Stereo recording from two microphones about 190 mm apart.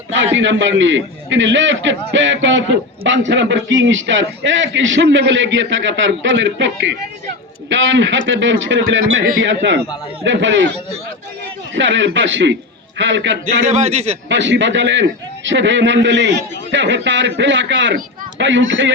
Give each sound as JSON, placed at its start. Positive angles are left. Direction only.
{"t": 0.3, "sound": "a man's voice", "side_deg": -75}
{"t": 9.2, "sound": "a man's voice", "side_deg": -60}
{"t": 11.7, "sound": "a man's voice", "side_deg": -75}
{"t": 13.7, "sound": "a man's voice", "side_deg": -35}
{"t": 14.3, "sound": "a man's voice", "side_deg": -70}